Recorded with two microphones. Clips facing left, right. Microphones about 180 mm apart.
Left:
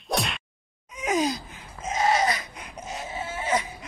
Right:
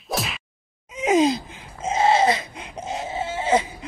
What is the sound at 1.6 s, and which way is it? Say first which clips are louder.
Goat: right 3 dB; 25° right (ahead or behind).